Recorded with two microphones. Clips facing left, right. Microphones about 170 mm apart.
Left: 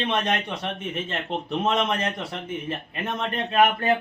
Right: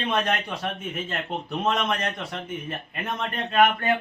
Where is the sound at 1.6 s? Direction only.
25° left (ahead or behind).